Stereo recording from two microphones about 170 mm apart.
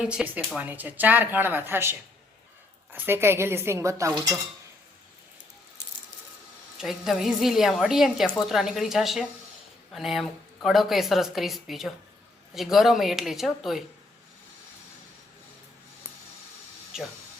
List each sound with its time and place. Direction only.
0.0 s speech: 5° right (ahead or behind)
6.7 s a woman's voice: centre (ahead or behind)
16.9 s a woman's voice: 5° right (ahead or behind)